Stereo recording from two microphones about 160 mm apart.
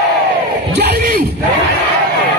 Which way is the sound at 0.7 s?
85° right.